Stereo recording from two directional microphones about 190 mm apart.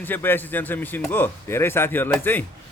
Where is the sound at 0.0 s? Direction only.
10° left (ahead or behind).